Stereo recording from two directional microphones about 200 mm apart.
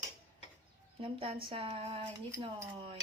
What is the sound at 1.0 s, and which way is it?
Speech, 30° right (ahead or behind).